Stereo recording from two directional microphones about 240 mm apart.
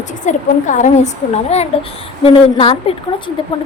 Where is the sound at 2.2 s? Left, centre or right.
Left.